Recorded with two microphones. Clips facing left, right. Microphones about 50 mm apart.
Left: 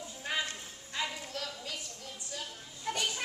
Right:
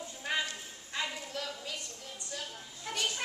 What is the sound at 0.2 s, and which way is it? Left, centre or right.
Clip-clop, centre.